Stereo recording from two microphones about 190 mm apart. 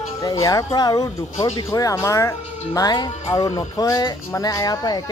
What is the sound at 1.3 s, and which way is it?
Speech, 30° left (ahead or behind).